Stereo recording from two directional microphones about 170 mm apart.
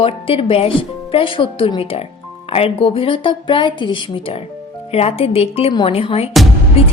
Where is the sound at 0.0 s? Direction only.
35° left (ahead or behind).